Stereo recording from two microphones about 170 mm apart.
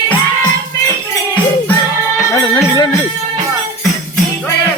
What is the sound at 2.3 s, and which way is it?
Music, 20° left (ahead or behind).